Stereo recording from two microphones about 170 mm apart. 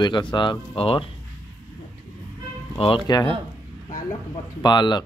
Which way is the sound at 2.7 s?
30° left (ahead or behind).